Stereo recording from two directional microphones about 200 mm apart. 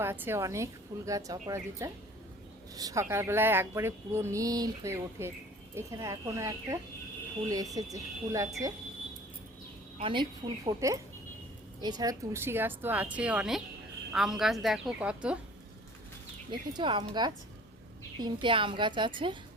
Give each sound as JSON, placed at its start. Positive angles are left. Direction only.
{"t": 0.0, "sound": "speech", "side_deg": -10}
{"t": 10.0, "sound": "a woman's voice", "side_deg": -25}
{"t": 16.5, "sound": "a woman's voice", "side_deg": -25}